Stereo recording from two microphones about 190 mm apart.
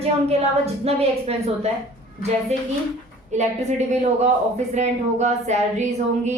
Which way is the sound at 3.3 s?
35° right (ahead or behind).